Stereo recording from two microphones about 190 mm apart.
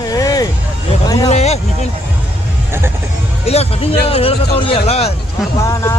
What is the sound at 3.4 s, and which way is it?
Music, 30° left (ahead or behind).